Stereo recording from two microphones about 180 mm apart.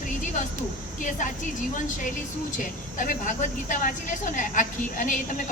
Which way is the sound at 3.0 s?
45° left (ahead or behind).